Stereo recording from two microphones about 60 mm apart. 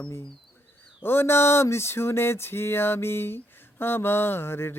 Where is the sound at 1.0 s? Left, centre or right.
Left.